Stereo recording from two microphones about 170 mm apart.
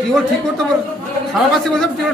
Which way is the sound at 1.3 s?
5° left (ahead or behind).